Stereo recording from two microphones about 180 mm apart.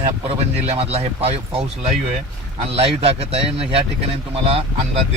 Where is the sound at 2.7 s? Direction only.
30° right (ahead or behind).